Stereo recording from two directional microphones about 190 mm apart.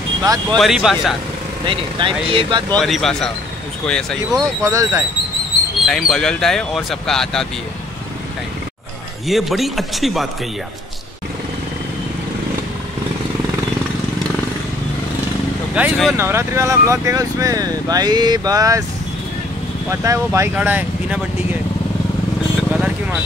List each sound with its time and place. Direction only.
0.5 s speech: centre (ahead or behind)
1.7 s speech: 25° right (ahead or behind)
2.7 s speech: centre (ahead or behind)
4.6 s speech: 15° right (ahead or behind)
5.9 s speech: centre (ahead or behind)
9.3 s speech: centre (ahead or behind)
15.7 s speech: 5° right (ahead or behind)
16.2 s speech: 15° right (ahead or behind)
19.9 s speech: 15° right (ahead or behind)
22.7 s speech: 5° right (ahead or behind)